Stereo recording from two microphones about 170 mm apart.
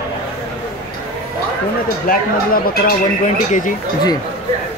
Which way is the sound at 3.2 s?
50° left (ahead or behind).